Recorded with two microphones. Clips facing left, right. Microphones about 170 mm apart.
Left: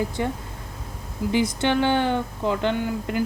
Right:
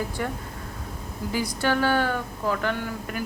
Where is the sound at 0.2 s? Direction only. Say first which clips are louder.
Left 3 dB; 20° left (ahead or behind).